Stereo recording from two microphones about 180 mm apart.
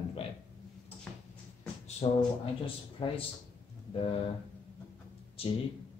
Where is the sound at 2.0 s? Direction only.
30° left (ahead or behind).